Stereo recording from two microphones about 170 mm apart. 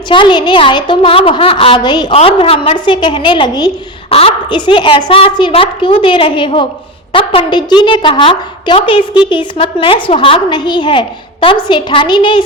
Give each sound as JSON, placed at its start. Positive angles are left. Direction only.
{"t": 0.1, "sound": "a woman's voice", "side_deg": 30}